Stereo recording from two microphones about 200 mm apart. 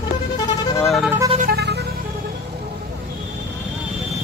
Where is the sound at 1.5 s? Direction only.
55° right (ahead or behind).